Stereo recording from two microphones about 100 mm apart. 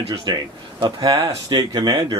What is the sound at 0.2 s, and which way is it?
Speech, 50° right (ahead or behind).